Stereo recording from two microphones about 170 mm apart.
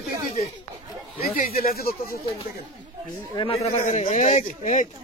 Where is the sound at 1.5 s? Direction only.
60° left (ahead or behind).